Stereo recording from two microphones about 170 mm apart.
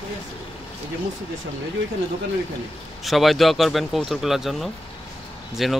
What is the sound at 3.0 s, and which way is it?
A man's voice, centre (ahead or behind).